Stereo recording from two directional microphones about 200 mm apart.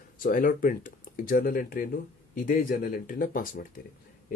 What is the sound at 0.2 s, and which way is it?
Speech, 45° left (ahead or behind).